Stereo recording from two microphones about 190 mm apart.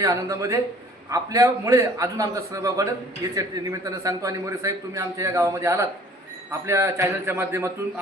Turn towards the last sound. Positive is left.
turn(degrees=-15)  # may be behind; listen again after turning